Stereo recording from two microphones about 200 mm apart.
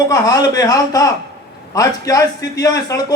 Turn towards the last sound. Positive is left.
turn(degrees=20)  # may be behind; listen again after turning